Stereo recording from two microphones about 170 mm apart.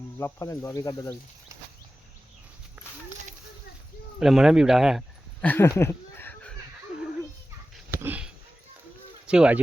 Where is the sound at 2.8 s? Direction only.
10° right (ahead or behind).